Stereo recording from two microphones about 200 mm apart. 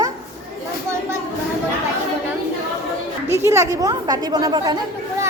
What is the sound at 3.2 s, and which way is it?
A woman's voice, 15° right (ahead or behind).